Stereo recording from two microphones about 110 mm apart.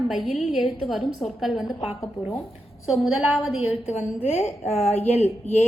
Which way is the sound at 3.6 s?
70° left (ahead or behind).